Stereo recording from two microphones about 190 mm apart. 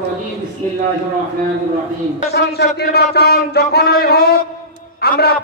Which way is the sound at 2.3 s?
60° left (ahead or behind).